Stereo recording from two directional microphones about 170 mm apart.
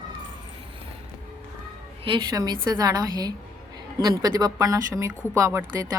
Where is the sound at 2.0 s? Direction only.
25° right (ahead or behind).